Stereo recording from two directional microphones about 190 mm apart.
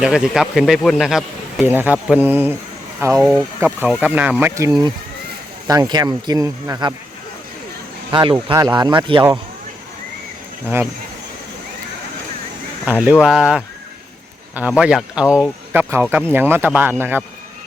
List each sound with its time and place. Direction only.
0.0 s speech: 5° right (ahead or behind); by 6.9 s 20° right (ahead or behind)
8.1 s speech: 25° right (ahead or behind)
12.8 s speech: 10° right (ahead or behind)